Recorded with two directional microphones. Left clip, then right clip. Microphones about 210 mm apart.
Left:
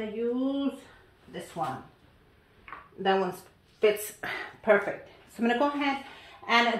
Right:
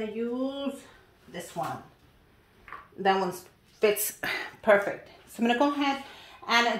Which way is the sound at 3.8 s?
50° right (ahead or behind).